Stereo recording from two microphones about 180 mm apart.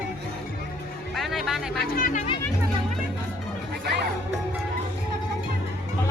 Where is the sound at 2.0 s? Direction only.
50° left (ahead or behind).